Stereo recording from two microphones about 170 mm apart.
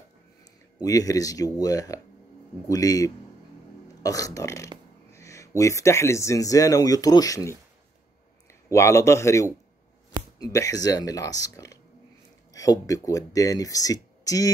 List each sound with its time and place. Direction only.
0.8 s speech: 20° left (ahead or behind)
5.1 s a sound: 20° left (ahead or behind)
5.6 s speech: 15° left (ahead or behind)
8.7 s speech: 15° left (ahead or behind)